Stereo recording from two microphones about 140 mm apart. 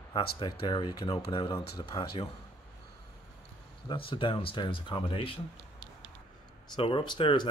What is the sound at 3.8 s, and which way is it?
Speech, 35° left (ahead or behind).